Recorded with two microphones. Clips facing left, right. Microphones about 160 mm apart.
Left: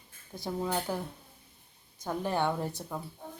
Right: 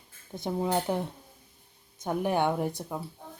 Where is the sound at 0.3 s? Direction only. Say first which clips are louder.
Right 4 dB; 20° right (ahead or behind).